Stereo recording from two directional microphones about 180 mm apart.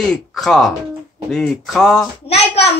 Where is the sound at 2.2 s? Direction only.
35° left (ahead or behind).